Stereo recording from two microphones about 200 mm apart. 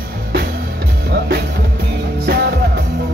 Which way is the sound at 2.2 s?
55° right (ahead or behind).